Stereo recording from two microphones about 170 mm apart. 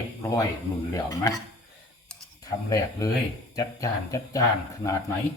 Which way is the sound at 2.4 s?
20° left (ahead or behind).